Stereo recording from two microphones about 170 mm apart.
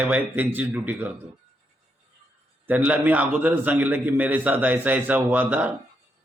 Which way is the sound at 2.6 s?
10° right (ahead or behind).